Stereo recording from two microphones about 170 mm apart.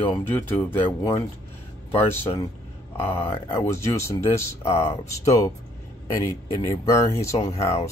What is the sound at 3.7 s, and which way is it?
Speech, 15° left (ahead or behind).